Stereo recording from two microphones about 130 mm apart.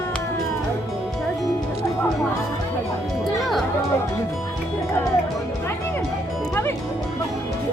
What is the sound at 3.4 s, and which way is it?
Music, centre (ahead or behind).